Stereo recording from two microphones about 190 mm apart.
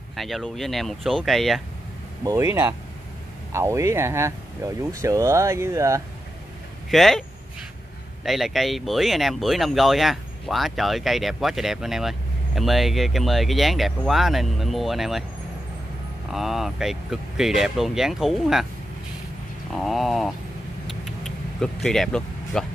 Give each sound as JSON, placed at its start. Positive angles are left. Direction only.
{"t": 0.1, "sound": "speech", "side_deg": 0}
{"t": 2.2, "sound": "speech", "side_deg": -15}
{"t": 6.9, "sound": "speech", "side_deg": 0}
{"t": 16.3, "sound": "speech", "side_deg": 0}
{"t": 19.7, "sound": "speech", "side_deg": 0}
{"t": 20.9, "sound": "vehicle", "side_deg": 0}